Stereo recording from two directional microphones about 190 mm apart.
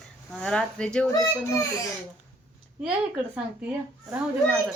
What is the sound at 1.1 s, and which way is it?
Speech, 20° left (ahead or behind).